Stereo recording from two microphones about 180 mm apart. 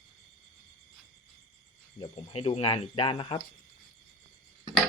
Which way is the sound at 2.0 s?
30° left (ahead or behind).